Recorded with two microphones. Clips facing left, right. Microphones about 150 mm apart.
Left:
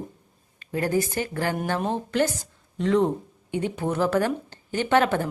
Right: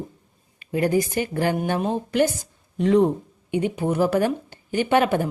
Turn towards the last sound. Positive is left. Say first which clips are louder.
# right 2 dB
turn(degrees=-15)  # may be behind; listen again after turning